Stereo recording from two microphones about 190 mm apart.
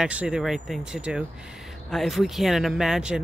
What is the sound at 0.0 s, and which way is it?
Speech, 5° right (ahead or behind).